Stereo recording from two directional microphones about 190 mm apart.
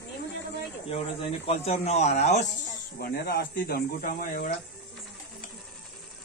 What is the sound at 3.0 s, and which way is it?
Speech, 55° left (ahead or behind).